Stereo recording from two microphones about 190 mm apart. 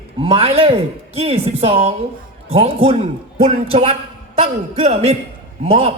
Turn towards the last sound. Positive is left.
turn(degrees=-30)  # may be behind; listen again after turning